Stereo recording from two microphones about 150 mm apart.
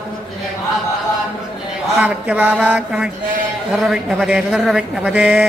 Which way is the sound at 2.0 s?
10° right (ahead or behind).